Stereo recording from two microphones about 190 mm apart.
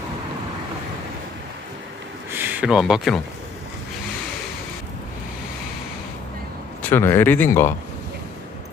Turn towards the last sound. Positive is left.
turn(degrees=10)  # may be behind; listen again after turning